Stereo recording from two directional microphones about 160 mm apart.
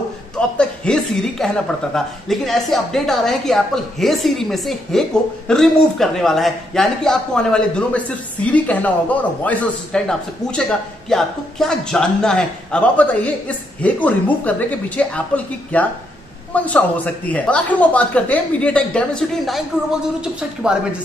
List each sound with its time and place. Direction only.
0.4 s a man's voice: 5° left (ahead or behind)